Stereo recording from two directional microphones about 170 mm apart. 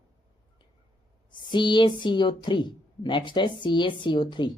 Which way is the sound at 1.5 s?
25° left (ahead or behind).